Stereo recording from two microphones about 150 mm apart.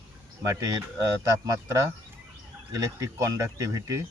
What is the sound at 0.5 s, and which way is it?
Speech, 20° right (ahead or behind).